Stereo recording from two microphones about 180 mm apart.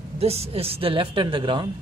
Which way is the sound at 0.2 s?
35° right (ahead or behind).